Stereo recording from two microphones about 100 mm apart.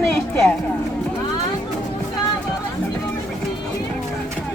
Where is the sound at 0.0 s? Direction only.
5° left (ahead or behind).